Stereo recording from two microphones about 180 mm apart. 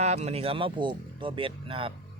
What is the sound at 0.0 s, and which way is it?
Speech, 35° right (ahead or behind).